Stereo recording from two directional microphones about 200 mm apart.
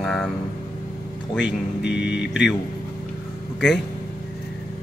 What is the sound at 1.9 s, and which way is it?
Speech, 60° left (ahead or behind).